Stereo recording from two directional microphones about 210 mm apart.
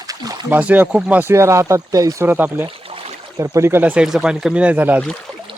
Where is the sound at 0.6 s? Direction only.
5° right (ahead or behind).